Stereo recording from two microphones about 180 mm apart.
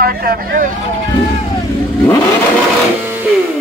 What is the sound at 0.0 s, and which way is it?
Speech, 55° right (ahead or behind).